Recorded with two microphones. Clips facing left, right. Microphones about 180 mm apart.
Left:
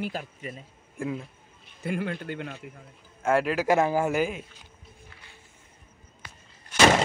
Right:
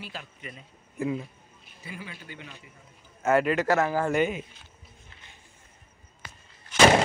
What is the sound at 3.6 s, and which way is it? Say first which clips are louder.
Speech: left 2 dB; 15° left (ahead or behind).